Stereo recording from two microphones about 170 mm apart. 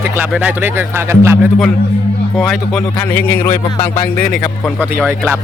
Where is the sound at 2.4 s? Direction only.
5° left (ahead or behind).